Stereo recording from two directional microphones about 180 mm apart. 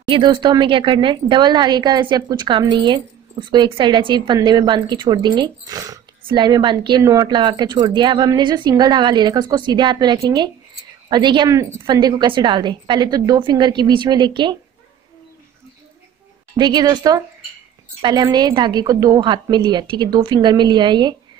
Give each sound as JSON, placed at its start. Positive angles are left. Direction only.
{"t": 0.1, "sound": "a woman's voice", "side_deg": -25}
{"t": 16.5, "sound": "a woman's voice", "side_deg": -25}